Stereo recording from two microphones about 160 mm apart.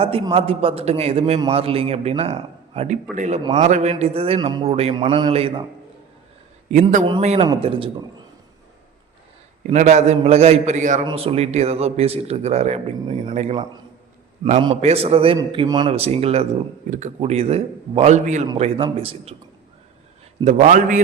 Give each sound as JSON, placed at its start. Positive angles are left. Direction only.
{"t": 0.0, "sound": "a man's voice", "side_deg": -35}
{"t": 6.7, "sound": "a man's voice", "side_deg": -45}
{"t": 9.7, "sound": "a man's voice", "side_deg": -45}
{"t": 11.0, "sound": "a man's voice", "side_deg": -35}
{"t": 14.8, "sound": "a man's voice", "side_deg": -40}
{"t": 15.9, "sound": "a man's voice", "side_deg": -40}
{"t": 18.5, "sound": "a man's voice", "side_deg": -35}
{"t": 20.4, "sound": "a man's voice", "side_deg": -45}